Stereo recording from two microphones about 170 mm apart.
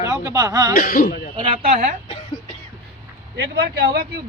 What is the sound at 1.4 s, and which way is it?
Speech, 30° right (ahead or behind).